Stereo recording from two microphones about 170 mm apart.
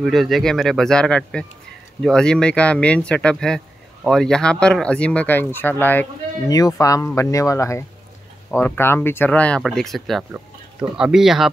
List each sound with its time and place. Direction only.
0.0 s speech: centre (ahead or behind)